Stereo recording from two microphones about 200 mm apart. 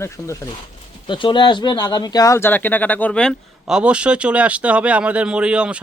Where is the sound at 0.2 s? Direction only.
15° left (ahead or behind).